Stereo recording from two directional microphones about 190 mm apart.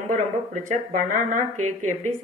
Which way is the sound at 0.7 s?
40° right (ahead or behind).